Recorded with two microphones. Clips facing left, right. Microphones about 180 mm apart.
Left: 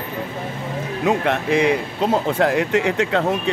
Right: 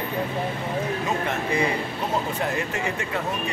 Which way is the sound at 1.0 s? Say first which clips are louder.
Left 7 dB; 75° left (ahead or behind).